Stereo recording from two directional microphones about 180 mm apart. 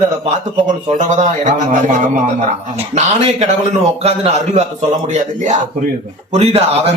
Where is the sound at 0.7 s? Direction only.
45° right (ahead or behind).